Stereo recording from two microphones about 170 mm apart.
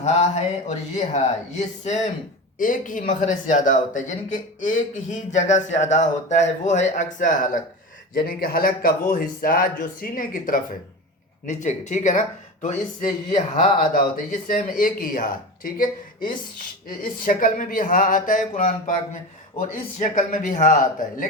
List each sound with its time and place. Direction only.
0.0 s a sound: 40° left (ahead or behind)
0.7 s speech: 45° left (ahead or behind)
8.1 s a man's voice: 60° left (ahead or behind)